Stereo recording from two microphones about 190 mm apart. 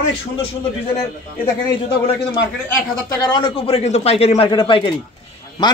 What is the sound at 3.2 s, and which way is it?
Speech, 25° left (ahead or behind).